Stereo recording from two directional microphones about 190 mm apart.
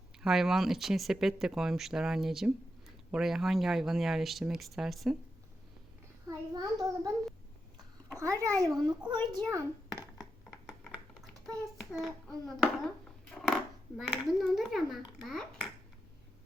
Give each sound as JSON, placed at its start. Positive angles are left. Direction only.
{"t": 0.2, "sound": "speech", "side_deg": 0}
{"t": 6.2, "sound": "a child's voice", "side_deg": -20}
{"t": 8.2, "sound": "a child's voice", "side_deg": -15}
{"t": 9.9, "sound": "a sound", "side_deg": 20}
{"t": 11.1, "sound": "typing", "side_deg": 5}
{"t": 11.9, "sound": "a child's voice", "side_deg": 0}